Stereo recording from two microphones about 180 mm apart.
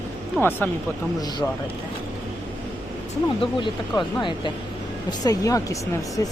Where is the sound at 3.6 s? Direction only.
25° left (ahead or behind).